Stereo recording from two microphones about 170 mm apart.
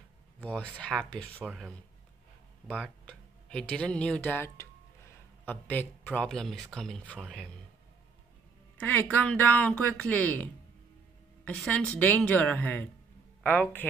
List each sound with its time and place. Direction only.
0.4 s speech: 10° left (ahead or behind)
2.7 s speech: 5° left (ahead or behind)
8.7 s a woman's voice: 10° left (ahead or behind)